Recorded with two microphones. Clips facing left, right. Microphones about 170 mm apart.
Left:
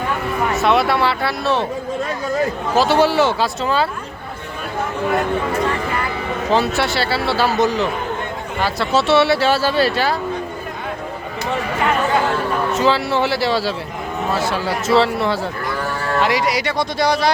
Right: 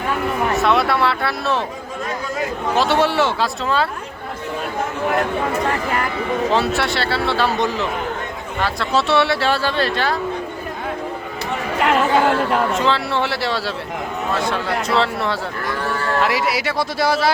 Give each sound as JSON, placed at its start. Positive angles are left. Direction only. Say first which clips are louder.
{"t": 0.5, "sound": "speech", "louder": "left 2 dB", "side_deg": 0}
{"t": 2.7, "sound": "speech", "louder": "left 3 dB", "side_deg": 0}
{"t": 6.5, "sound": "speech", "louder": "left 5 dB", "side_deg": 0}
{"t": 11.8, "sound": "chatter", "louder": "right 3 dB", "side_deg": -70}
{"t": 12.7, "sound": "speech", "louder": "left 2 dB", "side_deg": 0}